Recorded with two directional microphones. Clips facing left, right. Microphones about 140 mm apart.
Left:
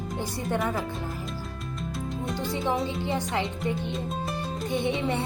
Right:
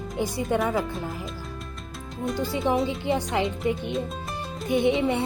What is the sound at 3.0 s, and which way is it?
Speech, 20° right (ahead or behind).